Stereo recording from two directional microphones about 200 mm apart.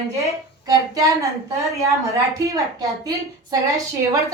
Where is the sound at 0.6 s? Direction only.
15° right (ahead or behind).